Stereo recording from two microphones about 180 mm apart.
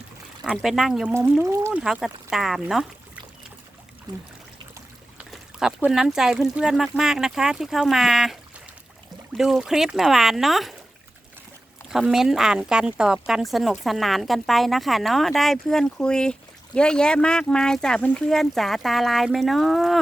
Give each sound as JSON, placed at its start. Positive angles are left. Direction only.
{"t": 0.4, "sound": "speech", "side_deg": 0}
{"t": 1.1, "sound": "speech", "side_deg": -15}
{"t": 1.8, "sound": "speech", "side_deg": -5}
{"t": 4.1, "sound": "trickle", "side_deg": -25}
{"t": 5.3, "sound": "speech", "side_deg": -5}
{"t": 9.4, "sound": "speech", "side_deg": -5}
{"t": 11.9, "sound": "speech", "side_deg": -5}